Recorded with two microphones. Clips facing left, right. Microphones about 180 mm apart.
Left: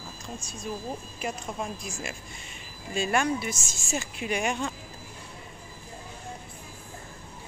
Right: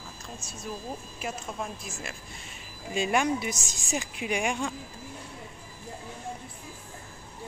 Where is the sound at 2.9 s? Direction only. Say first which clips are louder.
Even; 15° right (ahead or behind).